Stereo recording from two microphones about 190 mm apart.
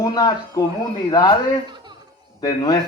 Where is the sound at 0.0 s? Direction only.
20° left (ahead or behind).